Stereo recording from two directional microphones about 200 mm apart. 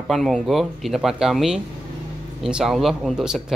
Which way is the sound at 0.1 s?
Centre (ahead or behind).